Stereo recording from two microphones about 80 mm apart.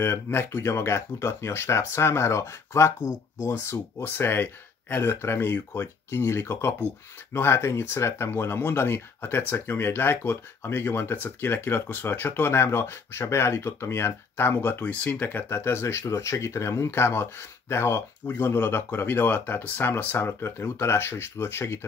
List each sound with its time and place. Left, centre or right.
0.0 s speech: left